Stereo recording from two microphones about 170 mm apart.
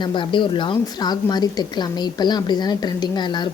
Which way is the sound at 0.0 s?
30° left (ahead or behind).